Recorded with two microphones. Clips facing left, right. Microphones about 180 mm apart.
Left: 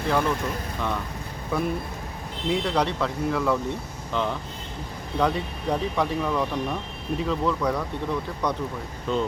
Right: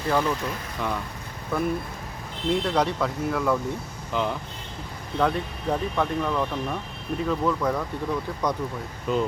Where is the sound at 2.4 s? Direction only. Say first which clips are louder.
Right 1 dB; 5° right (ahead or behind).